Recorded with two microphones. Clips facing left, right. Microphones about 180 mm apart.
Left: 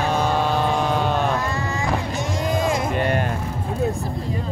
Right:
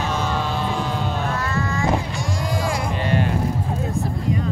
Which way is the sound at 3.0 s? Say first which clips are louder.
Right 2 dB; 55° left (ahead or behind).